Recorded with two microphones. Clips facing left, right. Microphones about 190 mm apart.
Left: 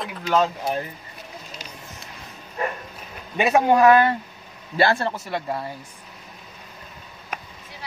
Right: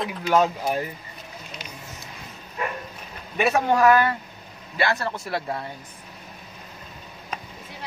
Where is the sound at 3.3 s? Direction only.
15° left (ahead or behind).